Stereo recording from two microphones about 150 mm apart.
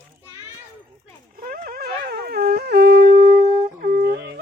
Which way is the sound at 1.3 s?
75° right (ahead or behind).